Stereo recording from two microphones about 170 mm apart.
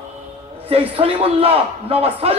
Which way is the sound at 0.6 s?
35° right (ahead or behind).